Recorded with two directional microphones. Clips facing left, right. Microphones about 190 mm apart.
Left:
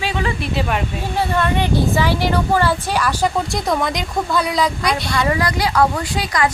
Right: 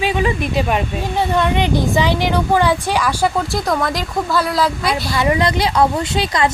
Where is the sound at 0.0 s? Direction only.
15° right (ahead or behind).